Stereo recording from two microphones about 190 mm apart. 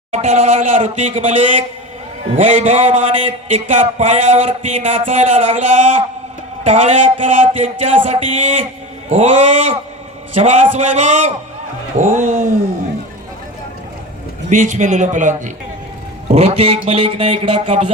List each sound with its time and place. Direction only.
0.1 s a man's voice: 35° right (ahead or behind)
2.4 s a man's voice: 35° right (ahead or behind)
14.5 s a man's voice: 40° right (ahead or behind)